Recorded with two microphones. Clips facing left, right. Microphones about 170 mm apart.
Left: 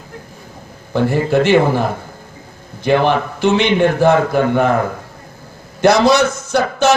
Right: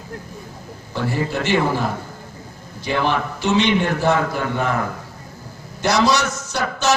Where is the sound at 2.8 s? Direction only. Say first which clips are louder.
Left 7 dB; 55° left (ahead or behind).